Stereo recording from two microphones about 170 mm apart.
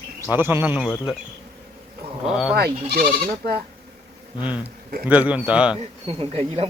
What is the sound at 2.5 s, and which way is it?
Speech, 65° right (ahead or behind).